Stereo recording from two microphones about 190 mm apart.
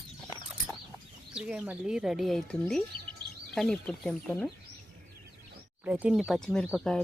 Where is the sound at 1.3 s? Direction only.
5° right (ahead or behind).